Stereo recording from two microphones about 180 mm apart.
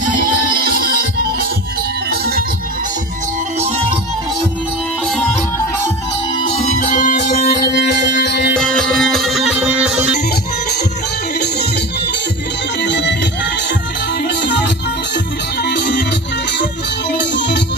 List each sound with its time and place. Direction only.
0.7 s music: 55° right (ahead or behind)
6.5 s music: 35° left (ahead or behind)
7.7 s music: 65° left (ahead or behind)
8.5 s music: 5° left (ahead or behind)
12.8 s music: 75° left (ahead or behind)
17.2 s music: 75° left (ahead or behind)